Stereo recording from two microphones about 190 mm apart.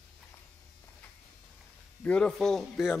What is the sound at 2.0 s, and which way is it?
Speech, 5° left (ahead or behind).